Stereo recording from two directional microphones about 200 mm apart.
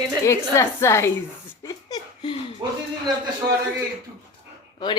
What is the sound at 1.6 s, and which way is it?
Laughter, 20° left (ahead or behind).